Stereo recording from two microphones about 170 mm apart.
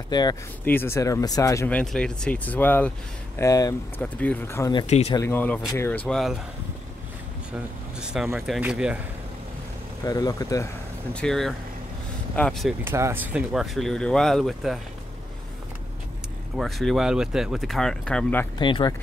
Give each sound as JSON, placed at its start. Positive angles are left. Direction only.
{"t": 0.1, "sound": "speech", "side_deg": 25}
{"t": 0.7, "sound": "speech", "side_deg": 15}
{"t": 1.7, "sound": "speech", "side_deg": 5}
{"t": 4.8, "sound": "speech", "side_deg": 40}
{"t": 5.1, "sound": "speech", "side_deg": 15}
{"t": 8.0, "sound": "speech", "side_deg": -5}
{"t": 10.0, "sound": "speech", "side_deg": 20}
{"t": 11.1, "sound": "speech", "side_deg": 0}
{"t": 12.8, "sound": "speech", "side_deg": -15}
{"t": 16.5, "sound": "speech", "side_deg": 0}
{"t": 18.6, "sound": "speech", "side_deg": 30}